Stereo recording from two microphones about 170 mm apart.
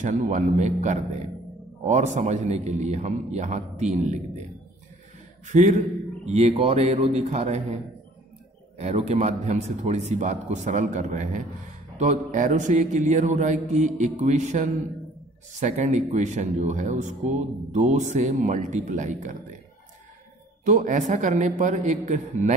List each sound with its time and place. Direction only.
0.0 s speech: 45° right (ahead or behind)
5.5 s a man's voice: 45° right (ahead or behind)
20.6 s speech: 45° right (ahead or behind)